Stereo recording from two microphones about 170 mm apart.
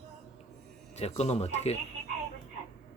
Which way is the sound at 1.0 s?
40° left (ahead or behind).